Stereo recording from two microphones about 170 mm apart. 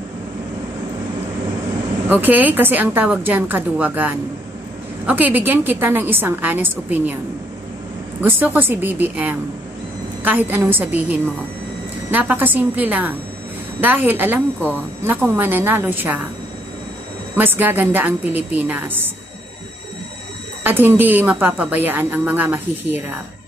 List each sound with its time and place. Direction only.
2.0 s a woman's voice: 10° right (ahead or behind)
8.2 s a woman's voice: 10° right (ahead or behind)
17.4 s a woman's voice: 10° right (ahead or behind)
20.6 s a woman's voice: 10° right (ahead or behind)